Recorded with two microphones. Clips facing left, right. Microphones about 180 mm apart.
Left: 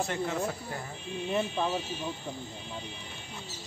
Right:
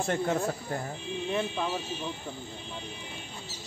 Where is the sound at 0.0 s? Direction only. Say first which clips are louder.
Right 3 dB; 50° right (ahead or behind).